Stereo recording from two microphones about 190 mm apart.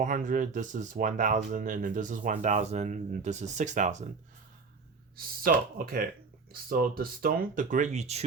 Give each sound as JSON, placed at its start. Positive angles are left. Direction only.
{"t": 0.0, "sound": "speech", "side_deg": -45}
{"t": 5.1, "sound": "speech", "side_deg": -50}